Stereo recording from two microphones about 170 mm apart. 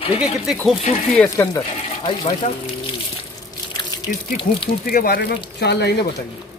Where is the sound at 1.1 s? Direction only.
20° left (ahead or behind).